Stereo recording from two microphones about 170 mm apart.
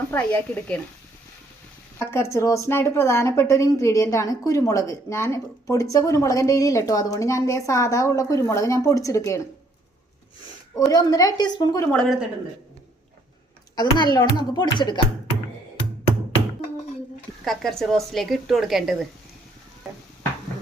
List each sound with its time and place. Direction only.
0.1 s speech: 10° left (ahead or behind)
2.0 s speech: 15° left (ahead or behind)
10.8 s a child's voice: 20° left (ahead or behind)
11.9 s speech: 5° left (ahead or behind)
13.7 s a child's voice: 25° left (ahead or behind)
17.4 s speech: centre (ahead or behind)